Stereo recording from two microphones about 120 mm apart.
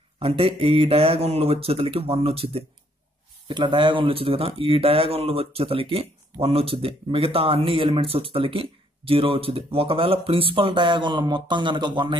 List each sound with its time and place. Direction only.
0.2 s speech: 55° right (ahead or behind)
3.4 s speech: 40° right (ahead or behind)